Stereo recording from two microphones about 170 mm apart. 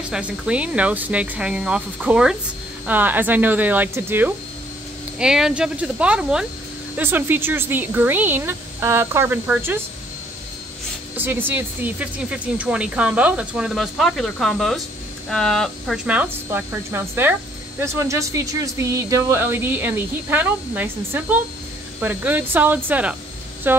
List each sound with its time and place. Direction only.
0.1 s a woman's voice: 5° right (ahead or behind)
11.1 s a woman's voice: 10° right (ahead or behind)
16.1 s a woman's voice: 10° right (ahead or behind)